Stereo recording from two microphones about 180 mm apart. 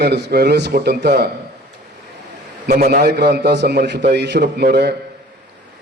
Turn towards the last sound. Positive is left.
turn(degrees=-65)  # may be behind; listen again after turning